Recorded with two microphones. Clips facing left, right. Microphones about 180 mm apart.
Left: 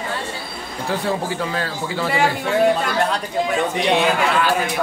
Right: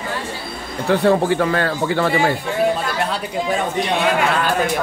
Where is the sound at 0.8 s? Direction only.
60° right (ahead or behind).